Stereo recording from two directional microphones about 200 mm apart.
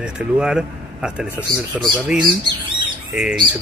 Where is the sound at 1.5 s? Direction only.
20° right (ahead or behind).